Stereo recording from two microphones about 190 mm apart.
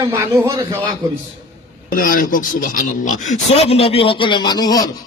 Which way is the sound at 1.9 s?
45° left (ahead or behind).